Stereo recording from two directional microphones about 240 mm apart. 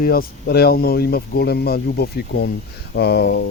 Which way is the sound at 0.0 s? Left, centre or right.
Left.